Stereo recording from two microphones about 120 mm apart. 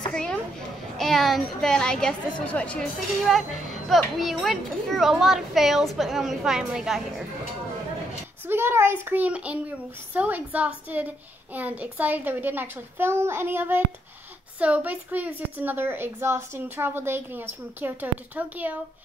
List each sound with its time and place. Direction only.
0.1 s a sound: 5° left (ahead or behind)
0.9 s speech: centre (ahead or behind)
2.8 s speech: centre (ahead or behind)
8.5 s a woman's voice: 20° right (ahead or behind)